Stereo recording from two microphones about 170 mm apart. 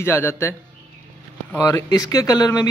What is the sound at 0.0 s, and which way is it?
Speech, 15° left (ahead or behind).